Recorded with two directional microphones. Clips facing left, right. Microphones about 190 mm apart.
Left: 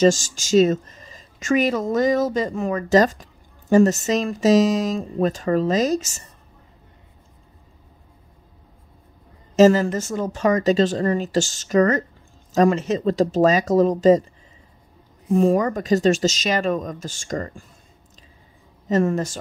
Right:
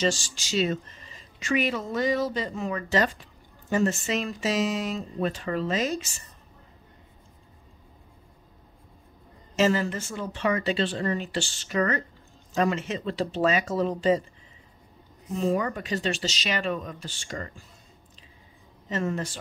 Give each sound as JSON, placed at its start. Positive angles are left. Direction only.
{"t": 0.0, "sound": "a woman's voice", "side_deg": 45}
{"t": 9.6, "sound": "a woman's voice", "side_deg": 40}
{"t": 15.3, "sound": "a woman's voice", "side_deg": 45}
{"t": 18.9, "sound": "a woman's voice", "side_deg": 40}